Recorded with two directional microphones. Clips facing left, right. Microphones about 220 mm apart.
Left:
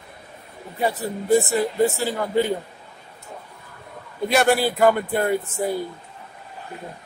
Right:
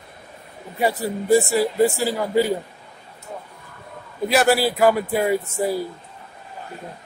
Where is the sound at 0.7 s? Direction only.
10° right (ahead or behind).